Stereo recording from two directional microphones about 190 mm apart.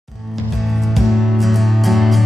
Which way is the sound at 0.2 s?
Centre (ahead or behind).